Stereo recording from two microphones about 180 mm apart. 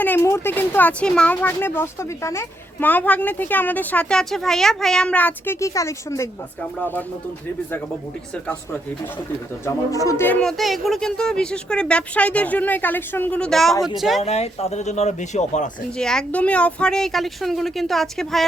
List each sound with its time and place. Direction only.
0.0 s speech: 10° left (ahead or behind)
9.6 s speech: 15° left (ahead or behind)
10.6 s speech: centre (ahead or behind)
14.2 s speech: 35° left (ahead or behind)
16.0 s speech: 5° left (ahead or behind)